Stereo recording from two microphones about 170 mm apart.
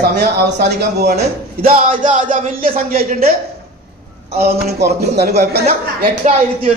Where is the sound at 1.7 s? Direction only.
55° right (ahead or behind).